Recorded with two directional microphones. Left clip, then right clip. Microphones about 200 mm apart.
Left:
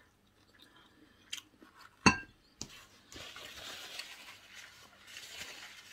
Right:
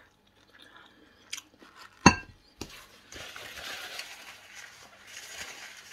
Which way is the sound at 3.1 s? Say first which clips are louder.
Right 5 dB; 5° left (ahead or behind).